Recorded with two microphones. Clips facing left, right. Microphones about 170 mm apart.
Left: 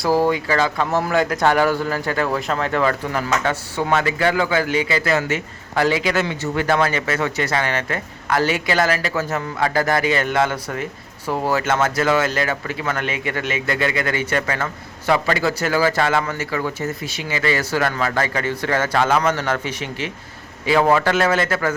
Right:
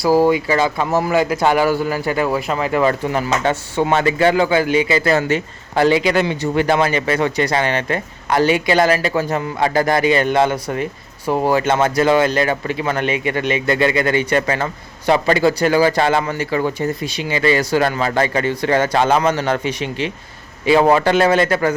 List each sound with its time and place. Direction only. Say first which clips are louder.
0.0 s a man's voice: right 4 dB; 10° right (ahead or behind)
2.8 s speech: right 3 dB; 20° right (ahead or behind)